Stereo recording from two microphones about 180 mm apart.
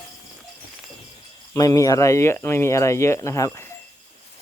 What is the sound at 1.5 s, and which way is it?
Speech, 20° left (ahead or behind).